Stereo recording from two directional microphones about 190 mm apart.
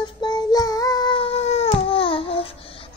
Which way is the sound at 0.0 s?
25° left (ahead or behind).